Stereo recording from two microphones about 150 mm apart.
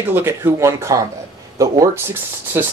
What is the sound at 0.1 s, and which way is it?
Speech, 15° right (ahead or behind).